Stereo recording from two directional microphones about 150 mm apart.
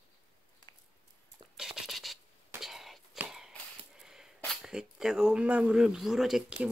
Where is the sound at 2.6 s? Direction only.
Centre (ahead or behind).